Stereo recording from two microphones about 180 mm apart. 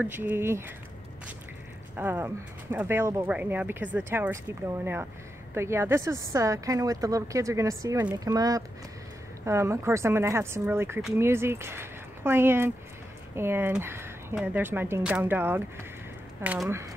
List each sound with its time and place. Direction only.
0.0 s a woman's voice: 10° right (ahead or behind)
2.0 s a woman's voice: 10° right (ahead or behind)